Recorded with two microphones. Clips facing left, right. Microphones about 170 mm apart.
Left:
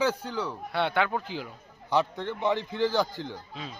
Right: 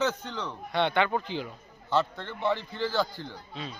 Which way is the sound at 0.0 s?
10° left (ahead or behind).